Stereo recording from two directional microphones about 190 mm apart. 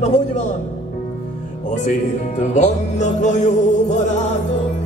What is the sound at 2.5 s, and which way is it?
Music, 40° left (ahead or behind).